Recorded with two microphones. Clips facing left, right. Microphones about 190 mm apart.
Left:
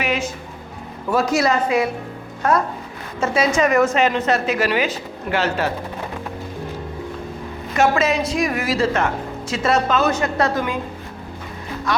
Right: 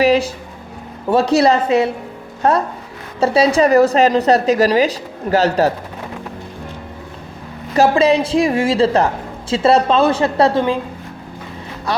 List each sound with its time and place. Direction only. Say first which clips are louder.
0.0 s a sound: right 9 dB; 35° right (ahead or behind)
1.1 s a woman's voice: right 5 dB; 35° right (ahead or behind)
3.2 s a woman's voice: right 5 dB; 35° right (ahead or behind)
7.8 s a woman's voice: right 5 dB; 30° right (ahead or behind)
11.9 s speech: right 1 dB; 35° right (ahead or behind)